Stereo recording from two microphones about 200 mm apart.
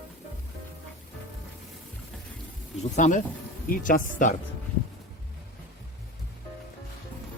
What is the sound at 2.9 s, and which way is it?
Speech, 35° left (ahead or behind).